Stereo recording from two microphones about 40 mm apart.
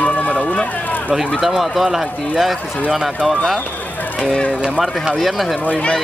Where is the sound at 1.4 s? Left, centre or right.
Centre.